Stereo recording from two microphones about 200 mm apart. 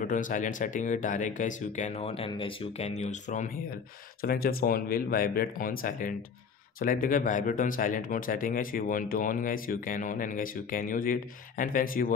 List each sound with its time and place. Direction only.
0.0 s speech: 40° left (ahead or behind)
4.2 s speech: 50° left (ahead or behind)